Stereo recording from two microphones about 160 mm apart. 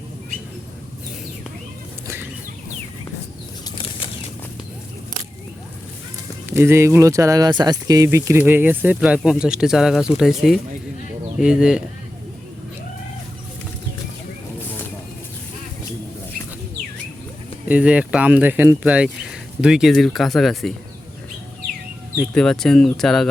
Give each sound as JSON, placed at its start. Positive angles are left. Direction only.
{"t": 2.0, "sound": "chicken", "side_deg": -15}
{"t": 3.8, "sound": "bird flight", "side_deg": 35}
{"t": 6.5, "sound": "speech", "side_deg": -15}
{"t": 17.7, "sound": "speech", "side_deg": -10}
{"t": 22.2, "sound": "speech", "side_deg": 5}